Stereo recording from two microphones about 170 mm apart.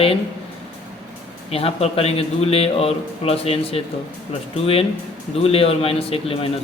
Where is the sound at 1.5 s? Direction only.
35° left (ahead or behind).